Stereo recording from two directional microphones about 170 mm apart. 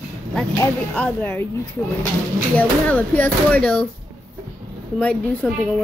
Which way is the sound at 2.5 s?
10° left (ahead or behind).